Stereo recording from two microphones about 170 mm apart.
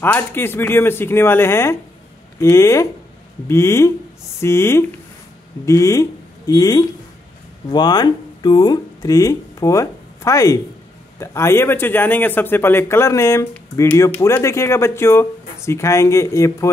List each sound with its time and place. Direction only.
0.0 s a man's voice: 15° left (ahead or behind)